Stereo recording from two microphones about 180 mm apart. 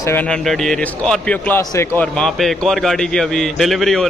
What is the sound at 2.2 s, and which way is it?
A man's voice, centre (ahead or behind).